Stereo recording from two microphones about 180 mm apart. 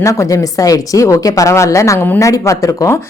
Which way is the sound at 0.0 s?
15° left (ahead or behind).